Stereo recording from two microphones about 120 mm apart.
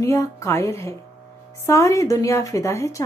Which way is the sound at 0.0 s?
25° left (ahead or behind).